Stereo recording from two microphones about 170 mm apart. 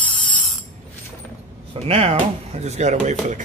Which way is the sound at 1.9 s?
35° right (ahead or behind).